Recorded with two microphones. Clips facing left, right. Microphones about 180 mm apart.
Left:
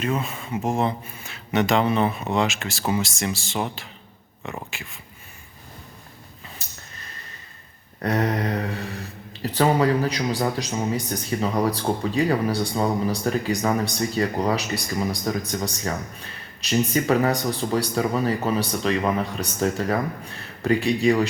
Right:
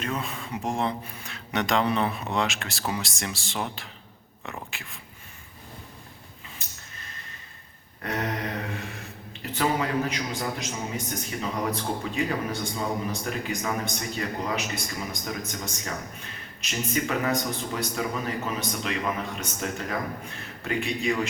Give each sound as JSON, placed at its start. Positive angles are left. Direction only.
{"t": 0.0, "sound": "speech", "side_deg": 5}
{"t": 8.0, "sound": "speech", "side_deg": 40}